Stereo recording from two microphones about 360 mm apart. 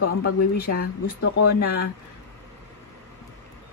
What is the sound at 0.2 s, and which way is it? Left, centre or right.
Speech, left.